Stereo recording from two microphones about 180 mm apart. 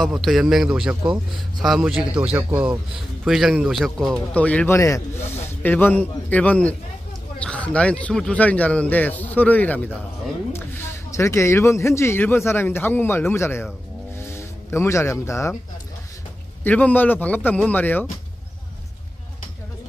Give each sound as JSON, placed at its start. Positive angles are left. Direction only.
{"t": 0.0, "sound": "a man's voice", "side_deg": 0}
{"t": 14.1, "sound": "music", "side_deg": 15}
{"t": 16.6, "sound": "speech", "side_deg": 10}